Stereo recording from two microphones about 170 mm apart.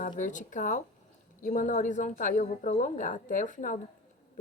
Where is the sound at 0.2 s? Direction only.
50° left (ahead or behind).